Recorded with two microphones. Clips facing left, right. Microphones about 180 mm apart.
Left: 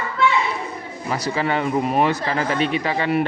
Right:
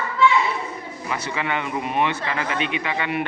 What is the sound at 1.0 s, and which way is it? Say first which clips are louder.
Speech: left 4 dB; 35° left (ahead or behind).